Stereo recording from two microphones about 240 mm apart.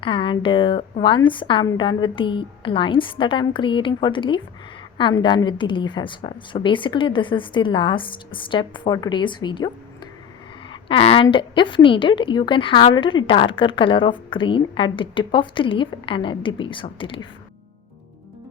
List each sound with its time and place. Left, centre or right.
0.0 s a woman's voice: left